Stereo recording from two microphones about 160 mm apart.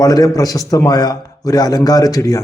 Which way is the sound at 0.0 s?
25° left (ahead or behind).